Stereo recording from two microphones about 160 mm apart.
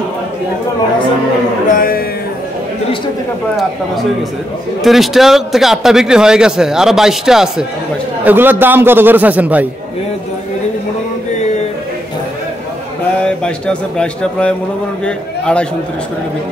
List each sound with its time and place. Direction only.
1.8 s speech: 65° left (ahead or behind)
4.8 s a man's voice: centre (ahead or behind)
13.2 s a man's voice: 5° left (ahead or behind)